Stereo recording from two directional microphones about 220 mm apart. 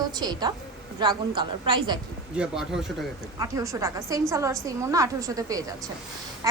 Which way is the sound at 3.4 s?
15° right (ahead or behind).